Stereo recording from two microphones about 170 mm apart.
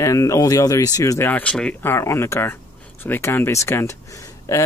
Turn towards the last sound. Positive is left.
turn(degrees=20)  # may be behind; listen again after turning